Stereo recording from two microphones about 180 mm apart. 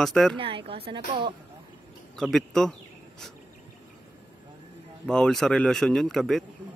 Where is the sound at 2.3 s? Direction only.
Centre (ahead or behind).